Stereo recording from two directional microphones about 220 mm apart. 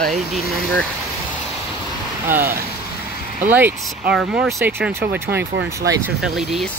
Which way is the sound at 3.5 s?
5° right (ahead or behind).